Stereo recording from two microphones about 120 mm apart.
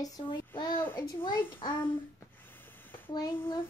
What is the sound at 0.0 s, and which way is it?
Speech, 30° left (ahead or behind).